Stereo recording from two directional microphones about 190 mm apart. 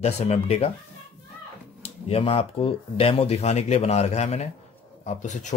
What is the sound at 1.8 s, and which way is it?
Speech, 30° left (ahead or behind).